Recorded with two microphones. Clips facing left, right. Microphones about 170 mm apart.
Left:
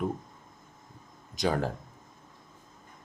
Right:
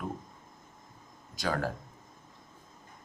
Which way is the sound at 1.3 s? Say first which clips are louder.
Left 4 dB; 20° left (ahead or behind).